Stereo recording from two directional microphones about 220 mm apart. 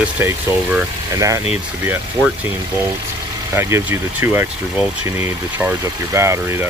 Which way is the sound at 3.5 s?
10° right (ahead or behind).